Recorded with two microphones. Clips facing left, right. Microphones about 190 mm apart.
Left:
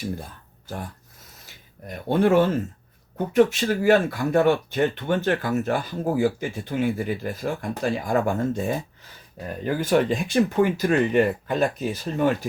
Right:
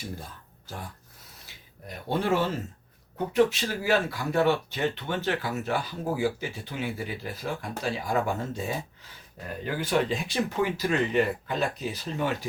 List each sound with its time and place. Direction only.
2.0 s speech: 55° left (ahead or behind)
9.8 s speech: 50° left (ahead or behind)